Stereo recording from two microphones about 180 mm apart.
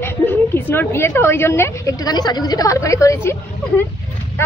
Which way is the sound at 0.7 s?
10° left (ahead or behind).